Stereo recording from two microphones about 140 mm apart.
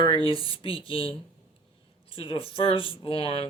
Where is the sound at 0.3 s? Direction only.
40° left (ahead or behind).